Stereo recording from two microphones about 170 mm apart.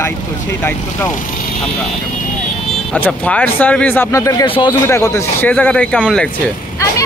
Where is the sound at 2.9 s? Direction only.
5° left (ahead or behind).